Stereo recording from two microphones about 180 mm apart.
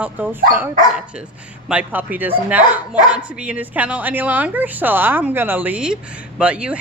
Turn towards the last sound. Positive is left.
turn(degrees=-5)  # may be behind; listen again after turning